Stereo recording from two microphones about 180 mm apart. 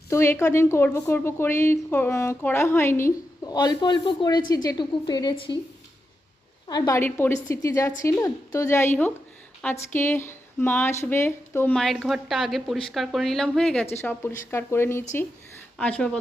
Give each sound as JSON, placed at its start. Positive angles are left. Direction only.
{"t": 0.1, "sound": "a woman's voice", "side_deg": 15}
{"t": 6.7, "sound": "a woman's voice", "side_deg": 20}